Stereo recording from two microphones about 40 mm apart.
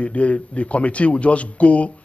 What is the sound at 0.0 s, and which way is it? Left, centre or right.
A man's voice, left.